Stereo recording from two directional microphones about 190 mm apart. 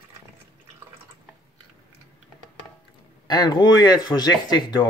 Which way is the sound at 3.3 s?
20° left (ahead or behind).